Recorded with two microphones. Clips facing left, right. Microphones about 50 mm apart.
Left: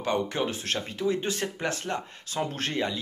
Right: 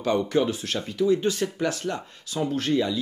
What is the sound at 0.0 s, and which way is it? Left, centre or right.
Speech, left.